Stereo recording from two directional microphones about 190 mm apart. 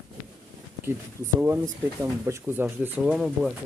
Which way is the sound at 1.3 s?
10° right (ahead or behind).